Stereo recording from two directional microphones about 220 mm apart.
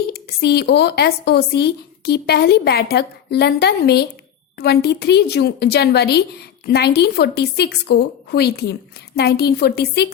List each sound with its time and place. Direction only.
0.1 s a woman's voice: 45° left (ahead or behind)